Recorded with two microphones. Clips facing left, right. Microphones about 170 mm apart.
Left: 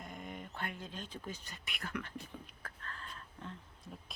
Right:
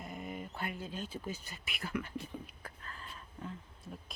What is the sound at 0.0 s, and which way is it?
Speech, 5° right (ahead or behind).